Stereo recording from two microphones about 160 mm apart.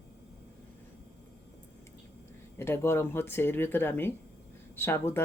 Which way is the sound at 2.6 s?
15° left (ahead or behind).